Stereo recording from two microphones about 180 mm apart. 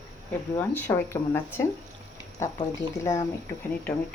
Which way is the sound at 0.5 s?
10° left (ahead or behind).